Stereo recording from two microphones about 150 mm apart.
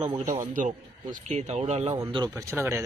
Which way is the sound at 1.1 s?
50° right (ahead or behind).